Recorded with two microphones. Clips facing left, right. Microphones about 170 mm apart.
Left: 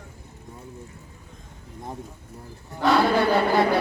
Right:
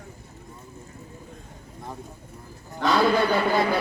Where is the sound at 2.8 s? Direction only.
65° left (ahead or behind).